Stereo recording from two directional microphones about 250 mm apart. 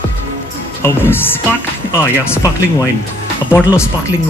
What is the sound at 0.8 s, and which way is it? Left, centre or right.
Speech, centre.